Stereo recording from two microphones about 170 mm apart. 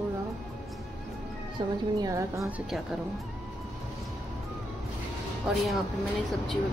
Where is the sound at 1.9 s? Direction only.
20° right (ahead or behind).